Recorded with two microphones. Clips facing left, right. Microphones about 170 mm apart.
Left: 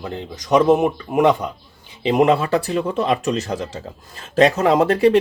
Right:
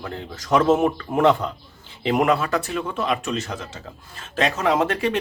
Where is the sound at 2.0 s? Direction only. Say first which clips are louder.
Left 4 dB; 25° left (ahead or behind).